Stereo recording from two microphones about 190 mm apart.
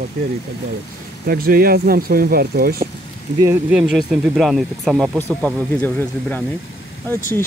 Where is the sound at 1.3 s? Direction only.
50° right (ahead or behind).